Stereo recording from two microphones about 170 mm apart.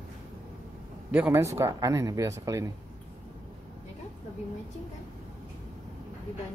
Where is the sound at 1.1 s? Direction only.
10° right (ahead or behind).